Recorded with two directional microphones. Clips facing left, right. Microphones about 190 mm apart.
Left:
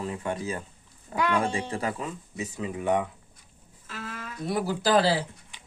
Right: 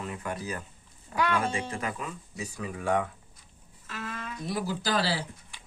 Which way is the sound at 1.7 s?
30° left (ahead or behind).